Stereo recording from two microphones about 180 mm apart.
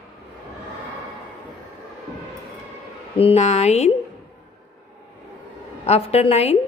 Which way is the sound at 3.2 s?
35° left (ahead or behind).